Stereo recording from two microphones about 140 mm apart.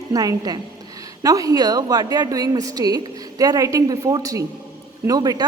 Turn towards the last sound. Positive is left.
turn(degrees=-25)  # may be behind; listen again after turning